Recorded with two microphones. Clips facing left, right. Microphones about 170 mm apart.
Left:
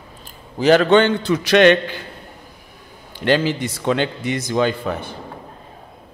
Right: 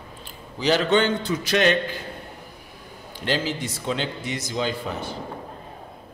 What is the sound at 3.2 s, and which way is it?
Speech, 65° left (ahead or behind).